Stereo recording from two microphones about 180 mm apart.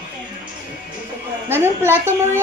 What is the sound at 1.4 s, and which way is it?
Speech, 10° right (ahead or behind).